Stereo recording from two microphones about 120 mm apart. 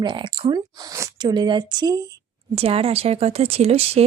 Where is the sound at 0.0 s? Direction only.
40° right (ahead or behind).